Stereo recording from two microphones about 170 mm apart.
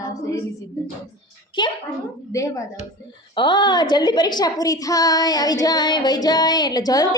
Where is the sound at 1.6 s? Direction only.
30° left (ahead or behind).